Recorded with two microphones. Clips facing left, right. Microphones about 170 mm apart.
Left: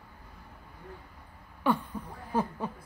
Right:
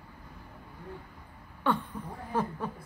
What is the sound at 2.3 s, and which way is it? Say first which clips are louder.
Chuckle: left 1 dB; 10° left (ahead or behind).